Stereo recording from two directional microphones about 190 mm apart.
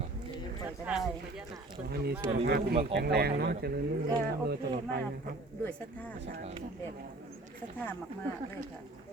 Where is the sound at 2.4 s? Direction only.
55° right (ahead or behind).